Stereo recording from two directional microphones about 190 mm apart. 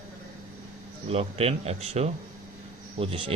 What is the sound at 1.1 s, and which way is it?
Speech, 35° right (ahead or behind).